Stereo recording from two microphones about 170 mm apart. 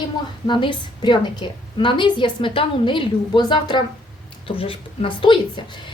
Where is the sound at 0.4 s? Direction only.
30° left (ahead or behind).